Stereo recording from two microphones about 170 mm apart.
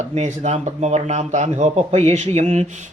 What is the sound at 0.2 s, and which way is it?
Speech, 40° right (ahead or behind).